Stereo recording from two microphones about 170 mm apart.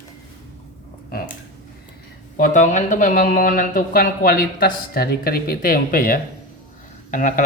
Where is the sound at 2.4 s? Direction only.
45° left (ahead or behind).